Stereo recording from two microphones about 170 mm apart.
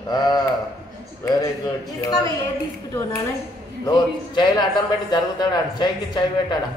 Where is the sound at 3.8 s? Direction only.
25° left (ahead or behind).